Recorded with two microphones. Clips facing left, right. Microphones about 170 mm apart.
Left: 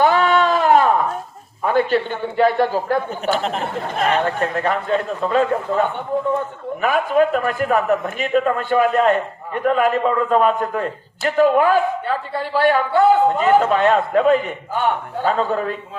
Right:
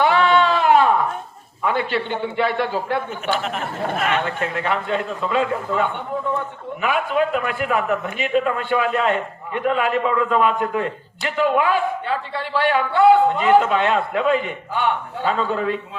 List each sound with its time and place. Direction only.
0.0 s a sound: 40° left (ahead or behind)
1.6 s a man's voice: 40° left (ahead or behind)
6.8 s a man's voice: 40° left (ahead or behind)